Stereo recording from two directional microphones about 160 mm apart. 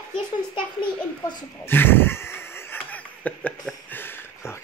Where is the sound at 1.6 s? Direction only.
15° left (ahead or behind).